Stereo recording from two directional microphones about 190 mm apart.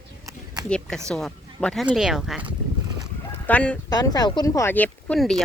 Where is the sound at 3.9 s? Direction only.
20° left (ahead or behind).